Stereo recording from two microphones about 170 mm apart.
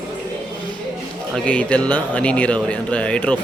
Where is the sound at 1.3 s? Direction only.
10° left (ahead or behind).